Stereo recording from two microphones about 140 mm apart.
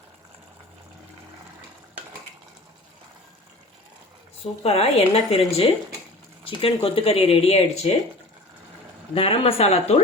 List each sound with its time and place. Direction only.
4.6 s speech: 45° left (ahead or behind)
9.1 s speech: 45° left (ahead or behind)